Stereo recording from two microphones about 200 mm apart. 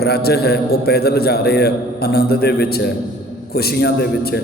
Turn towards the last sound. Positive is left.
turn(degrees=55)  # may be behind; listen again after turning